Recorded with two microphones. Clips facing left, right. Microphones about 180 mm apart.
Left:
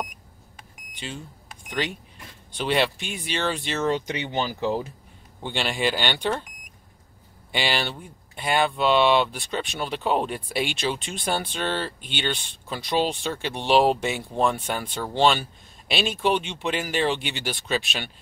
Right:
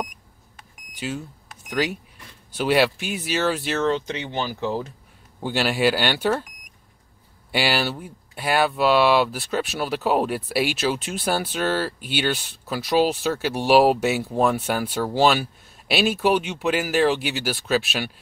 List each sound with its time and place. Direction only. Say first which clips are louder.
0.9 s speech: right 6 dB; 5° right (ahead or behind)
3.8 s speech: even; 15° left (ahead or behind)
5.4 s speech: right 5 dB; 5° right (ahead or behind)
7.5 s speech: right 4 dB; 5° right (ahead or behind)